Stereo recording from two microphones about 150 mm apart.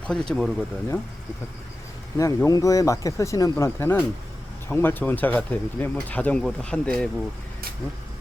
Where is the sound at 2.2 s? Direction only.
20° left (ahead or behind); by 7.0 s 5° left (ahead or behind).